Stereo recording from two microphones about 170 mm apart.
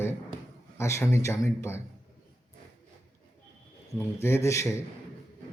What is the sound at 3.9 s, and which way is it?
Speech, 15° left (ahead or behind).